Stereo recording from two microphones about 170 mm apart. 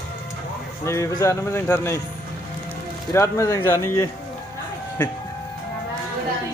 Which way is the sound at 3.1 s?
15° left (ahead or behind).